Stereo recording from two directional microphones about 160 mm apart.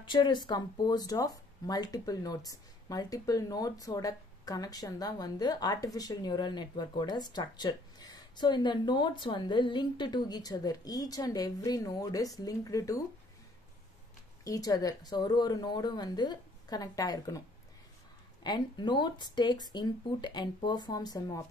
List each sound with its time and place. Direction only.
0.0 s speech: 30° left (ahead or behind)
14.4 s speech: 20° left (ahead or behind)
18.4 s speech: 25° left (ahead or behind)